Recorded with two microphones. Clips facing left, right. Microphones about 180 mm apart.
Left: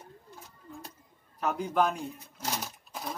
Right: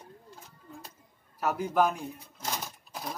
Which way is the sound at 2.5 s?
5° left (ahead or behind).